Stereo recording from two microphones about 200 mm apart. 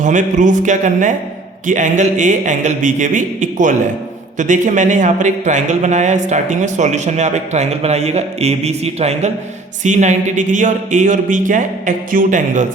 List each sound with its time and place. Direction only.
0.0 s a man's voice: 40° right (ahead or behind)